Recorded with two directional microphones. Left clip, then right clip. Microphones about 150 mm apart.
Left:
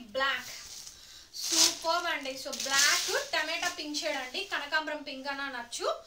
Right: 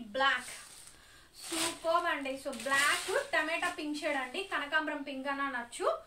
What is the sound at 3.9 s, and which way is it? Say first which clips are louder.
A woman's voice: left 1 dB; 10° right (ahead or behind).